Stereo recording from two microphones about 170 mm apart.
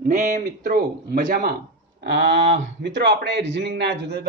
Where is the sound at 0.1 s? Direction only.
45° right (ahead or behind).